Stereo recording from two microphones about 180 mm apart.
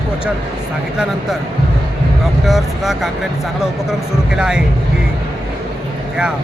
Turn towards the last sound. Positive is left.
turn(degrees=-5)  # may be behind; listen again after turning